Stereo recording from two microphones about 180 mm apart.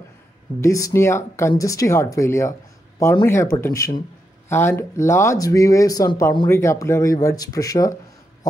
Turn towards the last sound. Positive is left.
turn(degrees=20)  # may be behind; listen again after turning